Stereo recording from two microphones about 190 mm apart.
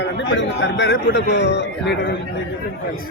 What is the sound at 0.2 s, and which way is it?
A man's voice, 70° left (ahead or behind).